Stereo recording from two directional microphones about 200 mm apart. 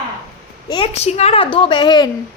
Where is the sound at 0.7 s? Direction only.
30° left (ahead or behind).